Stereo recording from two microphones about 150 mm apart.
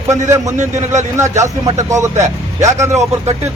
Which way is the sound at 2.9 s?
45° right (ahead or behind).